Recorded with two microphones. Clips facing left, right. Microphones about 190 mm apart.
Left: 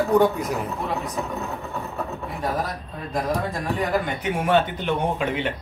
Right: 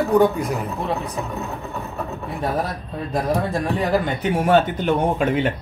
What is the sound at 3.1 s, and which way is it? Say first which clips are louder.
Speech: right 3 dB; 30° right (ahead or behind).